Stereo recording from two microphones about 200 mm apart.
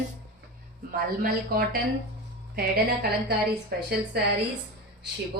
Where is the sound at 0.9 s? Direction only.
50° right (ahead or behind).